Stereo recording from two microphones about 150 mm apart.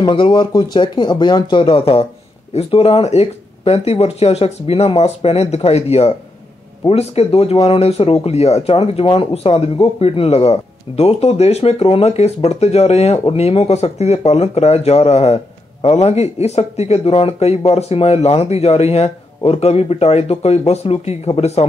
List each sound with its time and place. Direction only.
0.0 s speech: 30° left (ahead or behind)